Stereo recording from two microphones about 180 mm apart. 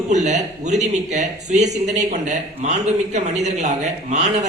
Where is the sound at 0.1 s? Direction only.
40° right (ahead or behind).